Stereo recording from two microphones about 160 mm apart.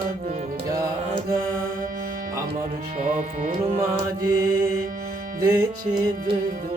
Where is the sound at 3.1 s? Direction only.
45° right (ahead or behind).